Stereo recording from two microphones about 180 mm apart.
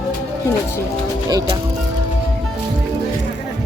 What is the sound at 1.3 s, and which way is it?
Speech, 20° right (ahead or behind).